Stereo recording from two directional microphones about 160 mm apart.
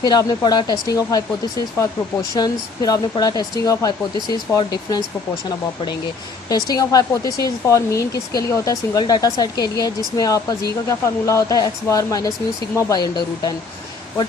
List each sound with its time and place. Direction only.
0.0 s speech: 25° left (ahead or behind)
2.3 s speech: 25° left (ahead or behind)
6.5 s speech: 25° left (ahead or behind)